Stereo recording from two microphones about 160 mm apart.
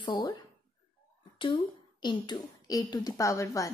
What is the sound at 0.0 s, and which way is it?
Speech, 30° left (ahead or behind).